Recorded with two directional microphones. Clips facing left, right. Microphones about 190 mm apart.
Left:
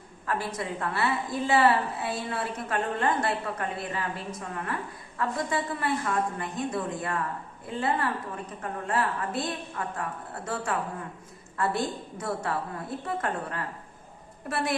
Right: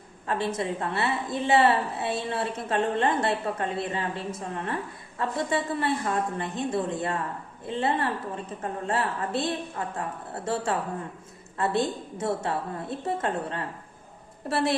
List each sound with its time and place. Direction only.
0.3 s a woman's voice: 25° right (ahead or behind)